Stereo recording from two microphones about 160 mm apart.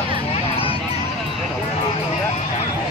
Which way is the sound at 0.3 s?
35° left (ahead or behind).